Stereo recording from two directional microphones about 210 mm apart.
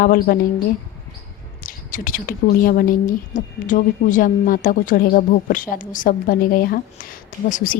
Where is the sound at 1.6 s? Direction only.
40° left (ahead or behind).